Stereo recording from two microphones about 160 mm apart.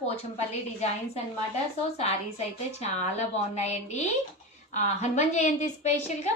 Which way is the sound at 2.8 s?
40° left (ahead or behind).